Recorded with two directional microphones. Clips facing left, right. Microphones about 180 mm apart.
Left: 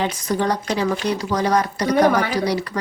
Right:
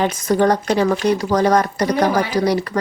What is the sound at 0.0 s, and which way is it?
A woman's voice, 50° right (ahead or behind).